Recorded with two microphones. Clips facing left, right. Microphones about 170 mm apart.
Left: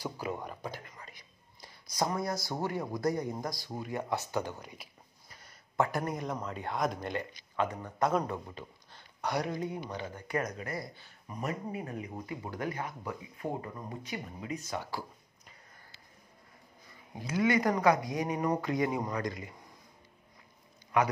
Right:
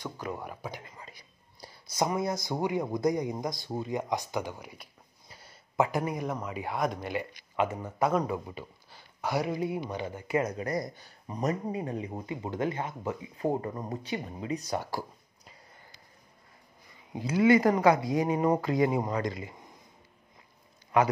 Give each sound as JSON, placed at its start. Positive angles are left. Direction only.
{"t": 0.0, "sound": "speech", "side_deg": 10}
{"t": 0.4, "sound": "speech", "side_deg": -10}
{"t": 0.8, "sound": "whispering", "side_deg": -30}
{"t": 2.1, "sound": "speech", "side_deg": -20}
{"t": 5.8, "sound": "speech", "side_deg": -15}
{"t": 6.0, "sound": "speech", "side_deg": -5}
{"t": 10.2, "sound": "speech", "side_deg": -25}
{"t": 13.6, "sound": "speech", "side_deg": -45}
{"t": 14.0, "sound": "speech", "side_deg": -30}
{"t": 17.2, "sound": "speech", "side_deg": -25}